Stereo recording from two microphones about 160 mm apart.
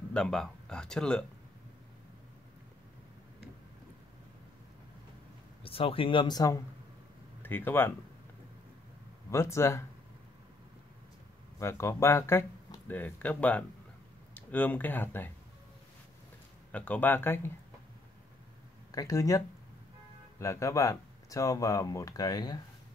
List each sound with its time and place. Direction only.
0.1 s speech: 5° left (ahead or behind)
5.6 s speech: 35° left (ahead or behind)
7.4 s speech: 15° left (ahead or behind)
9.3 s speech: 15° left (ahead or behind)
11.6 s speech: 15° left (ahead or behind)
16.7 s speech: 10° left (ahead or behind)
18.9 s speech: 20° left (ahead or behind)